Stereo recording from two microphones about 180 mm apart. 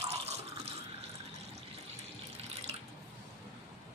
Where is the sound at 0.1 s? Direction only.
35° right (ahead or behind).